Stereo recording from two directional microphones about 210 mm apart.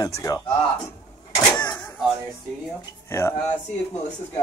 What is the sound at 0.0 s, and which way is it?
Speech, 15° left (ahead or behind).